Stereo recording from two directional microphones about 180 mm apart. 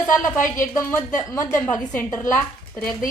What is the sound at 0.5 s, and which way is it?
A woman's voice, 15° left (ahead or behind).